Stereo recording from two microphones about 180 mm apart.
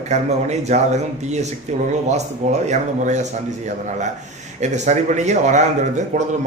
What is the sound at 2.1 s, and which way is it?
A man's voice, 40° right (ahead or behind).